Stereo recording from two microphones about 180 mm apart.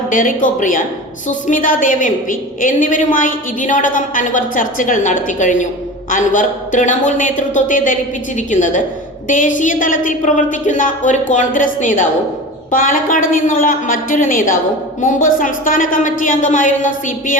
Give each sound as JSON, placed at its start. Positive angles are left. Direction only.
{"t": 0.1, "sound": "a woman's voice", "side_deg": 45}